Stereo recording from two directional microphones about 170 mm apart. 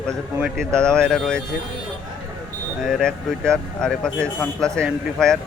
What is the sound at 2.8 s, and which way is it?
Speech, 5° left (ahead or behind).